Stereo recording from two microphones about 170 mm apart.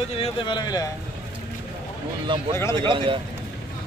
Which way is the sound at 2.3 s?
30° right (ahead or behind).